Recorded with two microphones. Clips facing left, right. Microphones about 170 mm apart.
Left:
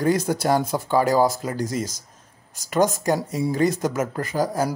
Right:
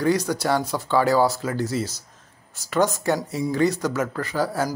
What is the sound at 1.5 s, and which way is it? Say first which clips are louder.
Speech: right 1 dB; 45° left (ahead or behind).